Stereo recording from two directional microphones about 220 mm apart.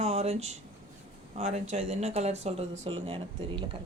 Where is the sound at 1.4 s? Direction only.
30° right (ahead or behind).